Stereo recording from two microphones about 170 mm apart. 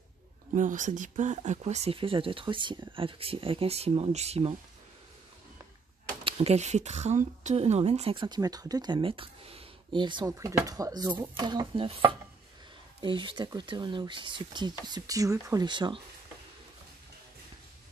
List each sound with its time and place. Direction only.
0.6 s speech: 50° right (ahead or behind)
6.2 s speech: 40° right (ahead or behind)